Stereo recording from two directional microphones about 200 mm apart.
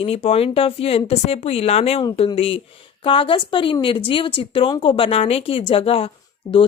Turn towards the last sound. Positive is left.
turn(degrees=25)  # may be behind; listen again after turning